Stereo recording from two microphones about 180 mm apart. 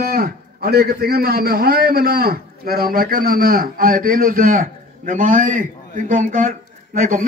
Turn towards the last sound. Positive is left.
turn(degrees=-45)  # may be behind; listen again after turning